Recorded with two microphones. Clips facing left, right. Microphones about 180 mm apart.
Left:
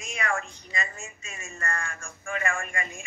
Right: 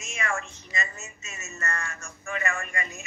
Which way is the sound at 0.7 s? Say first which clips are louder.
Even; 40° right (ahead or behind).